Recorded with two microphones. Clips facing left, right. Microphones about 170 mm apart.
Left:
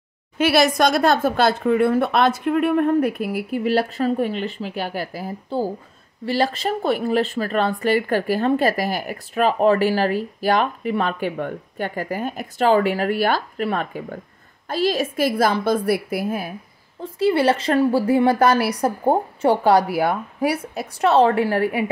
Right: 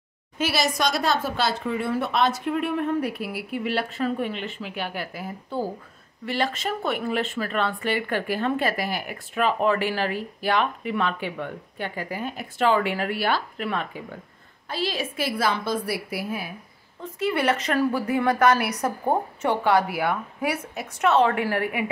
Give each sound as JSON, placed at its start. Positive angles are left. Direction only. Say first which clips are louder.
{"t": 0.4, "sound": "speech", "louder": "left 8 dB", "side_deg": 60}
{"t": 17.0, "sound": "speech", "louder": "left 6 dB", "side_deg": 30}